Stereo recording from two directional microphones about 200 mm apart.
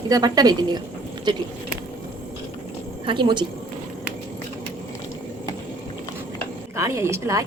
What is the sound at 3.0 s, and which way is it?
Speech, 25° right (ahead or behind).